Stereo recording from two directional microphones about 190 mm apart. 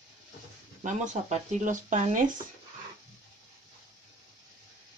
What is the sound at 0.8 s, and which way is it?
Speech, 40° right (ahead or behind).